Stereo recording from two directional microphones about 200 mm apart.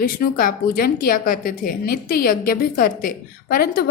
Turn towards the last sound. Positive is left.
turn(degrees=50)  # may be behind; listen again after turning